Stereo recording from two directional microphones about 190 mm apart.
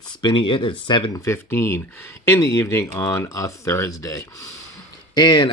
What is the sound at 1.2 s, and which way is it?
Speech, 15° left (ahead or behind).